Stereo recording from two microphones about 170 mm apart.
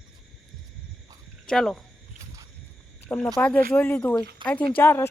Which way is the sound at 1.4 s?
Centre (ahead or behind).